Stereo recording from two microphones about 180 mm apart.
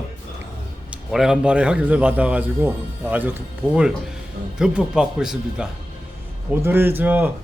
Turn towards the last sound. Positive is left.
turn(degrees=-10)  # may be behind; listen again after turning